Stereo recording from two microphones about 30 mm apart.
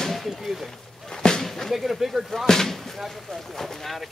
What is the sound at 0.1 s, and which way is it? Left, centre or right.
Speech, centre.